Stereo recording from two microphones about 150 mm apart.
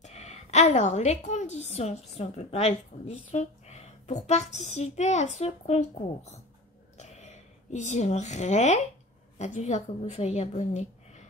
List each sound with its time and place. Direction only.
0.0 s a woman's voice: 45° left (ahead or behind)
7.0 s a sound: 50° left (ahead or behind)
9.4 s a woman's voice: 50° left (ahead or behind)